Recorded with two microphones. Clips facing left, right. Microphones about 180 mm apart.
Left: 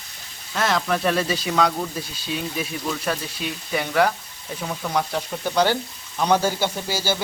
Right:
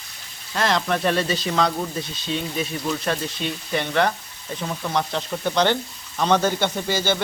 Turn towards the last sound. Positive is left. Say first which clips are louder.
# right 2 dB
turn(degrees=5)  # may be behind; listen again after turning